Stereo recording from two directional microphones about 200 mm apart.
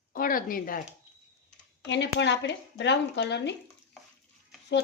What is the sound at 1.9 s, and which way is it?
Speech, 60° left (ahead or behind).